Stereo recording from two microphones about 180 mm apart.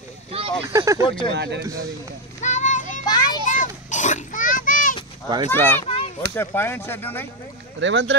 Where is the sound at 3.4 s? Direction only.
45° left (ahead or behind).